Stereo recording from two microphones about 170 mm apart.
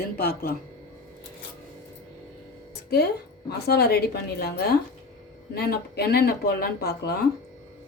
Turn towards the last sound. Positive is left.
turn(degrees=70)  # may be behind; listen again after turning